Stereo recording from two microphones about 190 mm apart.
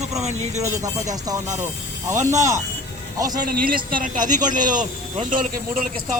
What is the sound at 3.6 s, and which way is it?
Speech, 50° right (ahead or behind).